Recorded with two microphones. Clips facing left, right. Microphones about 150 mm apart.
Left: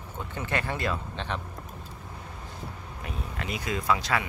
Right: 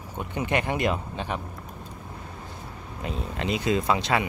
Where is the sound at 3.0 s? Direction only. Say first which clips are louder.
Right 6 dB; 25° right (ahead or behind).